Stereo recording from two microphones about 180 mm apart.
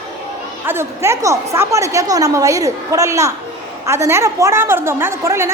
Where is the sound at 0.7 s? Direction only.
15° right (ahead or behind).